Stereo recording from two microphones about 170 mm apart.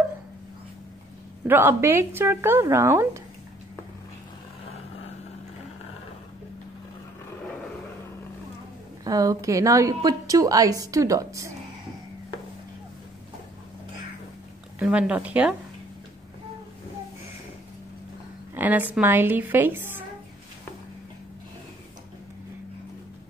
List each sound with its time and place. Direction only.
1.5 s speech: 15° right (ahead or behind)
9.0 s a woman's voice: 20° right (ahead or behind)
14.8 s speech: 5° right (ahead or behind)
18.5 s speech: 10° right (ahead or behind)